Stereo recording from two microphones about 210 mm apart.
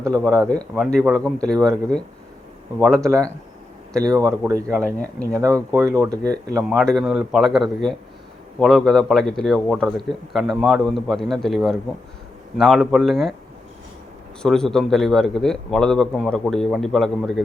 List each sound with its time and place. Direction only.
0.2 s a man's voice: centre (ahead or behind)
3.0 s a man's voice: 15° right (ahead or behind)
4.7 s speech: 5° left (ahead or behind)
5.3 s a man's voice: 15° right (ahead or behind)
6.7 s a man's voice: centre (ahead or behind)
14.4 s a man's voice: centre (ahead or behind)